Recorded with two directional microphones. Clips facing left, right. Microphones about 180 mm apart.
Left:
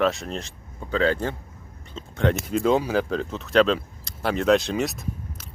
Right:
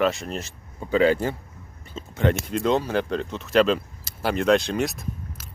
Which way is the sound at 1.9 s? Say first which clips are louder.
Even; 5° right (ahead or behind).